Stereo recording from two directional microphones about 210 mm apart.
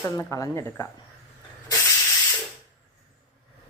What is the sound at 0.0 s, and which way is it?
Speech, 15° left (ahead or behind).